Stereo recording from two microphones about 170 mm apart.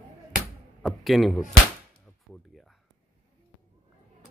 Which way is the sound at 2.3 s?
Centre (ahead or behind).